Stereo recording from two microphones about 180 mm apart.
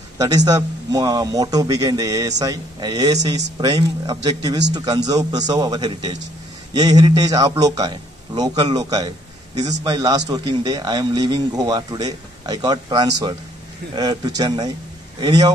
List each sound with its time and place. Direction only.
0.5 s a man's voice: 20° right (ahead or behind)